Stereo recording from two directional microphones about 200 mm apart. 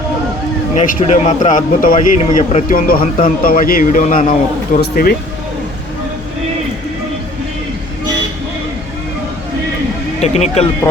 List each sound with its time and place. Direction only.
0.8 s speech: 35° left (ahead or behind)
10.2 s speech: 35° left (ahead or behind)